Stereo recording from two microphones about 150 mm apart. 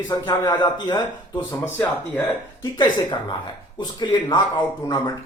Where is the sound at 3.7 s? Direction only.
30° left (ahead or behind).